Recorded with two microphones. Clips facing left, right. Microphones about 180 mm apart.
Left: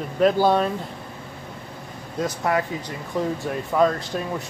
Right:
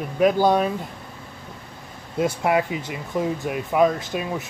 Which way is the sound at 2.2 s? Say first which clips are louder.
Right 3 dB; 20° right (ahead or behind).